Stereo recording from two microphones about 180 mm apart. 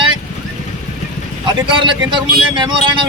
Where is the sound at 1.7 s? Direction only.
25° right (ahead or behind).